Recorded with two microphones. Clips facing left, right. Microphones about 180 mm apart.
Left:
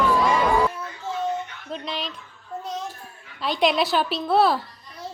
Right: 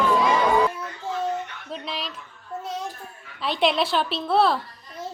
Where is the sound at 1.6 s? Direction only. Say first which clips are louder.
Left 2 dB; centre (ahead or behind).